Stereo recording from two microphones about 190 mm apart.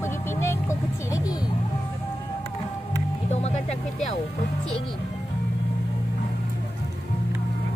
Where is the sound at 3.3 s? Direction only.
35° left (ahead or behind).